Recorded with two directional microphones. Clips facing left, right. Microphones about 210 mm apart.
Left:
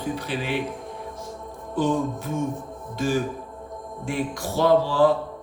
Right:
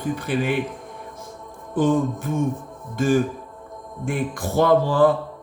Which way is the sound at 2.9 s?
50° right (ahead or behind).